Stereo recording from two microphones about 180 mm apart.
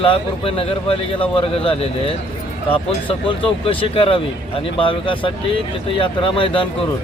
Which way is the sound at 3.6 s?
30° left (ahead or behind).